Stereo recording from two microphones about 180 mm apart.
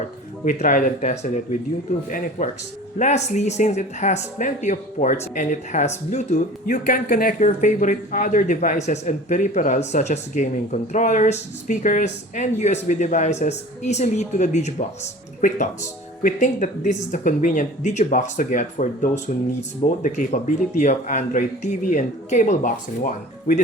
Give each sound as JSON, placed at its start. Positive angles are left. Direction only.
{"t": 0.4, "sound": "speech", "side_deg": 45}